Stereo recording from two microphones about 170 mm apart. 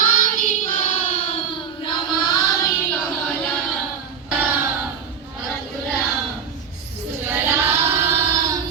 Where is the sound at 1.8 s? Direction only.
25° left (ahead or behind).